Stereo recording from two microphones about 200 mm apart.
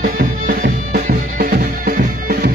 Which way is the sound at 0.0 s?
45° right (ahead or behind).